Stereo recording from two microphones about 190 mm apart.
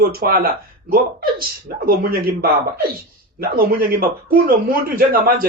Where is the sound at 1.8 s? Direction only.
55° right (ahead or behind).